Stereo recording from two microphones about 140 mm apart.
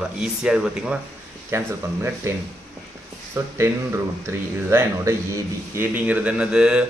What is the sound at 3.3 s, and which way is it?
Speech, 20° right (ahead or behind).